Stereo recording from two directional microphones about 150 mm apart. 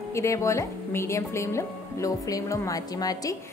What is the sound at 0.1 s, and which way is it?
A woman's voice, 20° left (ahead or behind).